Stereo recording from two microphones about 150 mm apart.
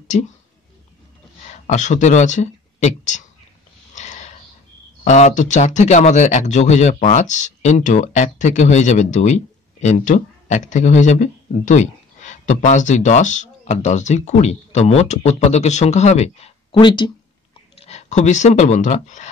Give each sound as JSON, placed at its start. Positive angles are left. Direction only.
{"t": 0.1, "sound": "speech", "side_deg": 50}
{"t": 1.5, "sound": "speech", "side_deg": 50}
{"t": 3.9, "sound": "sniff", "side_deg": 50}
{"t": 5.0, "sound": "speech", "side_deg": 50}
{"t": 16.8, "sound": "speech", "side_deg": 30}
{"t": 17.7, "sound": "speech", "side_deg": 45}